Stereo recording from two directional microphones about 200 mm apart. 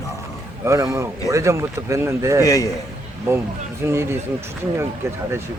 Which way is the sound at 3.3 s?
10° right (ahead or behind).